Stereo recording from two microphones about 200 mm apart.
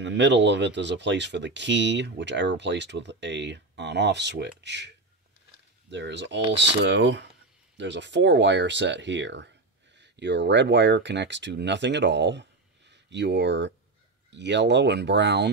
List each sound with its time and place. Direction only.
0.0 s speech: 60° right (ahead or behind)